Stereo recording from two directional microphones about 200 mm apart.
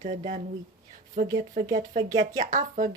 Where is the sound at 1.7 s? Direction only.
40° right (ahead or behind).